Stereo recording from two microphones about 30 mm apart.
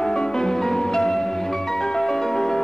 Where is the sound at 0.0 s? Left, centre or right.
Centre.